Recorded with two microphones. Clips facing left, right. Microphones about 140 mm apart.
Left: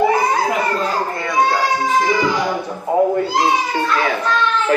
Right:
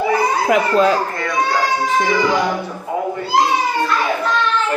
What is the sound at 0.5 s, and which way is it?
Speech, 80° right.